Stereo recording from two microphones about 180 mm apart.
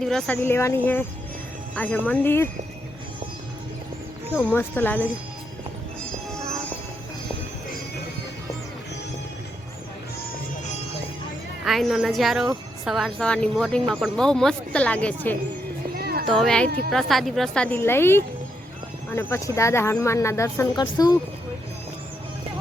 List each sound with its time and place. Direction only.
0.0 s speech: 5° left (ahead or behind)
4.4 s speech: 10° left (ahead or behind)
11.6 s speech: centre (ahead or behind)
16.0 s a sound: 60° right (ahead or behind)
16.3 s speech: 5° left (ahead or behind); by 21.2 s 20° left (ahead or behind)